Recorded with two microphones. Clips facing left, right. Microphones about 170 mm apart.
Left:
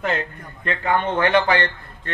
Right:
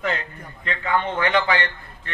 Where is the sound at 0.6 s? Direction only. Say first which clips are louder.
Left 2 dB; 55° left (ahead or behind).